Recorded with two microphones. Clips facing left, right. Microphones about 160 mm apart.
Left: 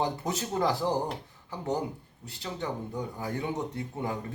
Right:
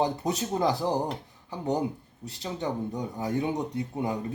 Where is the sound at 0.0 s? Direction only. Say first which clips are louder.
Right 3 dB; 20° right (ahead or behind).